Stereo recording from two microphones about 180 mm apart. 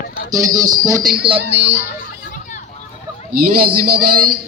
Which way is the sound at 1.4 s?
70° right (ahead or behind).